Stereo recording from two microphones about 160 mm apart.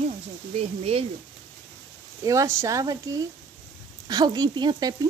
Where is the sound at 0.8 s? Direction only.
40° right (ahead or behind).